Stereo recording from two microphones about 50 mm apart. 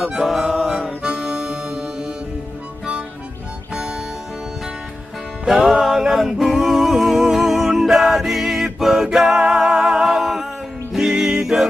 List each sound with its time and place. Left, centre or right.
0.0 s music: centre
3.7 s music: centre
5.5 s music: centre